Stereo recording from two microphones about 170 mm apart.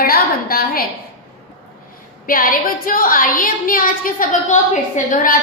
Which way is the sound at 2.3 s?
55° left (ahead or behind).